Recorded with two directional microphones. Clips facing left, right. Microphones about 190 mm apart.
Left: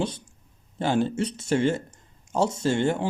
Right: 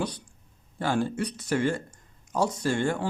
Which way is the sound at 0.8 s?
20° left (ahead or behind).